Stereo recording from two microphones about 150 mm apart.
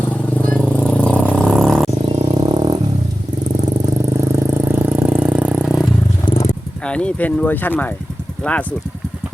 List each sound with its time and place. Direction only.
0.5 s vehicle: 5° left (ahead or behind)
2.0 s music: 30° right (ahead or behind)
3.5 s vehicle: 25° right (ahead or behind); by 5.9 s 5° right (ahead or behind)
6.3 s wild animals: 45° left (ahead or behind)
6.8 s speech: 5° left (ahead or behind)